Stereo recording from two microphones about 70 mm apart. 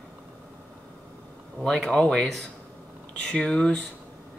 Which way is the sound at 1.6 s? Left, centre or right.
Centre.